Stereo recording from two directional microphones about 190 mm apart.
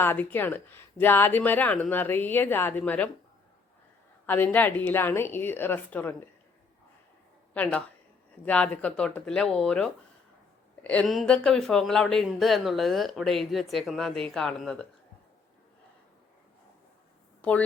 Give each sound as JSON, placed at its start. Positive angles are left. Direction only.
{"t": 0.0, "sound": "speech", "side_deg": 10}
{"t": 4.3, "sound": "speech", "side_deg": 10}
{"t": 7.5, "sound": "speech", "side_deg": 5}